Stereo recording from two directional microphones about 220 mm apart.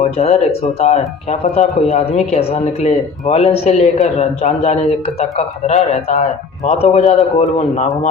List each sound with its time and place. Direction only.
0.0 s a man's voice: 30° left (ahead or behind)